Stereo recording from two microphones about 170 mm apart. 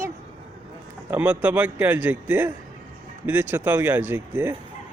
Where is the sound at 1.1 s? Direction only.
10° right (ahead or behind).